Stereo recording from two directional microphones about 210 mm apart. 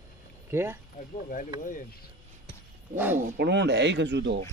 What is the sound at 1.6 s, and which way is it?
Speech, 40° left (ahead or behind).